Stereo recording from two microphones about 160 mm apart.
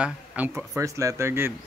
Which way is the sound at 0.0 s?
10° right (ahead or behind).